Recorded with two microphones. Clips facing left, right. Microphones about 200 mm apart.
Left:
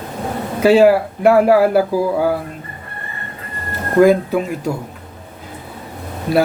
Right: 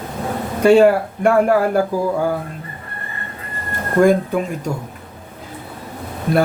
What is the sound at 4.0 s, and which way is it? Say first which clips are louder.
Speech: left 2 dB; 5° left (ahead or behind).